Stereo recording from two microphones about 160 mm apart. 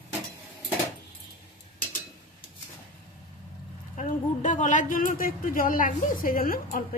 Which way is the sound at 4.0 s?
50° left (ahead or behind).